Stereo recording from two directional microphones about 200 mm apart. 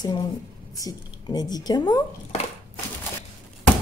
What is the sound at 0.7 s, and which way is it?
Speech, 20° left (ahead or behind).